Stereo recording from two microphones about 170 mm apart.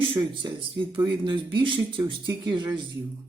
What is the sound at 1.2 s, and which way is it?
Speech, 30° right (ahead or behind).